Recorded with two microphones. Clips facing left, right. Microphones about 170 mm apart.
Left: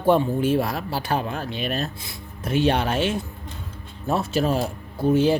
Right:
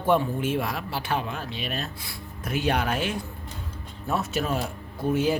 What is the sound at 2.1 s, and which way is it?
Speech, 25° left (ahead or behind).